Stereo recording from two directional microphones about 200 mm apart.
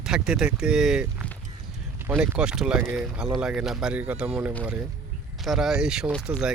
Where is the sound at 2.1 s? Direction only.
5° right (ahead or behind).